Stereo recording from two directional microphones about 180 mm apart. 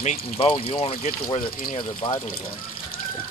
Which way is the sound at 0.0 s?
35° left (ahead or behind).